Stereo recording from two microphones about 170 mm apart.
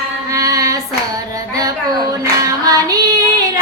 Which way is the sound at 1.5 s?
20° right (ahead or behind).